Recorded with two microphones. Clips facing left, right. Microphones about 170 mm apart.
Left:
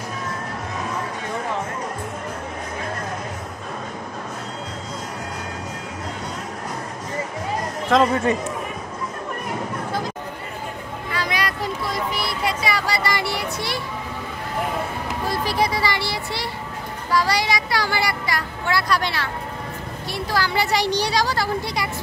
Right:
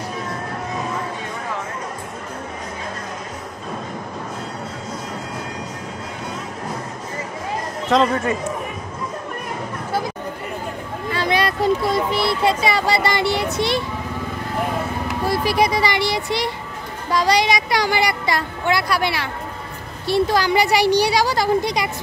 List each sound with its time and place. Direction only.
7.9 s speech: centre (ahead or behind)
11.1 s a sound: 25° right (ahead or behind)
15.2 s speech: 10° right (ahead or behind)
20.1 s speech: 25° right (ahead or behind)